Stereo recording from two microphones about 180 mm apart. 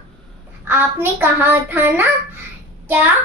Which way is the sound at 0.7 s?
10° right (ahead or behind).